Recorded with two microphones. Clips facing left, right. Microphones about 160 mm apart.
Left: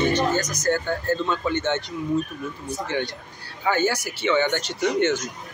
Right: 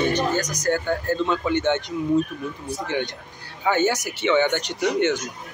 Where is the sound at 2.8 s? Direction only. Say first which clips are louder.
Right 1 dB; 15° right (ahead or behind).